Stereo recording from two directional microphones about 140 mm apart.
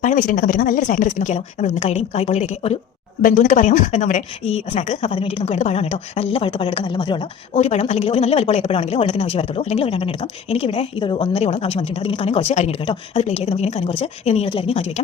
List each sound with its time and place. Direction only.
0.0 s speech: 65° left (ahead or behind); by 2.7 s 50° left (ahead or behind)
3.2 s speech: 75° left (ahead or behind); by 5.1 s 55° left (ahead or behind)
5.1 s a woman's voice: 40° left (ahead or behind)
7.5 s speech: 50° left (ahead or behind)